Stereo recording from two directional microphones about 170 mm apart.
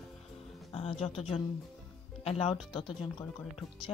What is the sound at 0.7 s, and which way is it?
Speech, 35° left (ahead or behind).